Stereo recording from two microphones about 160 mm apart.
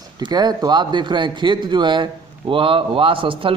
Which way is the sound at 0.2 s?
25° right (ahead or behind).